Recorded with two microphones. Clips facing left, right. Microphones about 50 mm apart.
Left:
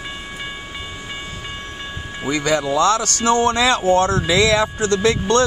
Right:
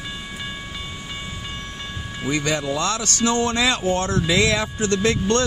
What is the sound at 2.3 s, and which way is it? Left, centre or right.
Speech, left.